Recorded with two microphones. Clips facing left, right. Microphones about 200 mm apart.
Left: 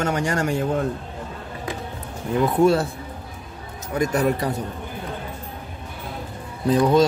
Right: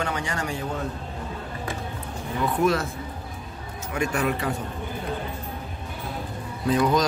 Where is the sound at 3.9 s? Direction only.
40° left (ahead or behind).